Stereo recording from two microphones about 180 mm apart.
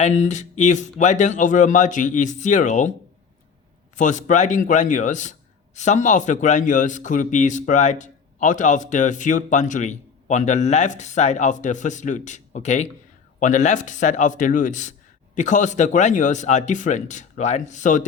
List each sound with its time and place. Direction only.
0.0 s a man's voice: 40° left (ahead or behind)
3.9 s a man's voice: 45° left (ahead or behind)